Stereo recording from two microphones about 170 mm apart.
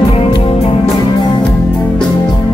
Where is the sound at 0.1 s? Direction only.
35° left (ahead or behind).